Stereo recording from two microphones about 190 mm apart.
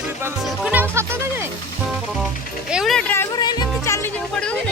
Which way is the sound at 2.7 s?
Centre (ahead or behind).